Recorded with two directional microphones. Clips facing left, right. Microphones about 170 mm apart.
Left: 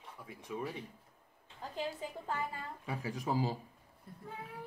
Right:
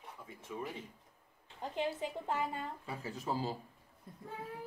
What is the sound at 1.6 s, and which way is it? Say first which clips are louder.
A woman's voice: right 3 dB; 20° right (ahead or behind).